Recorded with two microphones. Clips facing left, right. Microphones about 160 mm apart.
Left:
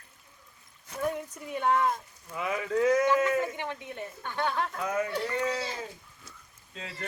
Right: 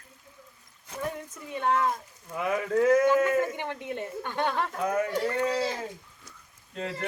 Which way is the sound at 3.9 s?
20° right (ahead or behind).